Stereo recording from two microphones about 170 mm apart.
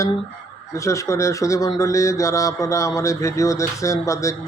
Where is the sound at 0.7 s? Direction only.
15° left (ahead or behind).